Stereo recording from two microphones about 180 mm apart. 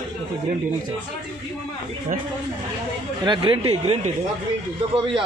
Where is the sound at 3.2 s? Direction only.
25° right (ahead or behind).